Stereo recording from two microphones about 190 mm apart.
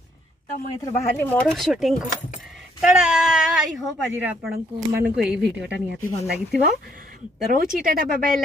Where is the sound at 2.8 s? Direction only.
5° right (ahead or behind).